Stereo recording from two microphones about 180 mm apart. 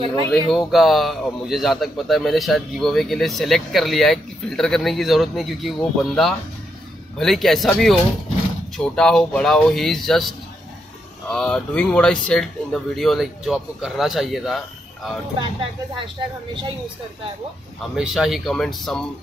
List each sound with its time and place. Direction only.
0.0 s speech: 30° right (ahead or behind)
0.3 s a man's voice: centre (ahead or behind)
17.9 s a man's voice: centre (ahead or behind)